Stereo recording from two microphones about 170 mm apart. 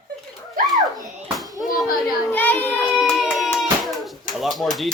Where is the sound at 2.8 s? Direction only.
5° right (ahead or behind).